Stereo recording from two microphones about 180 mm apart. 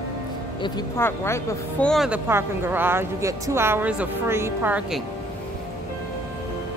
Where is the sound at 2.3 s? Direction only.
10° right (ahead or behind).